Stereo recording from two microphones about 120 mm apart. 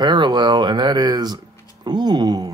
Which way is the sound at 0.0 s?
40° right (ahead or behind).